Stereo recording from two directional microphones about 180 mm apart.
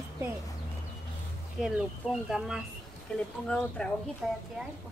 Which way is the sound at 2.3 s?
5° right (ahead or behind).